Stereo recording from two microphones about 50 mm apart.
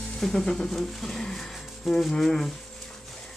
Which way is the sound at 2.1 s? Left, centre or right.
Centre.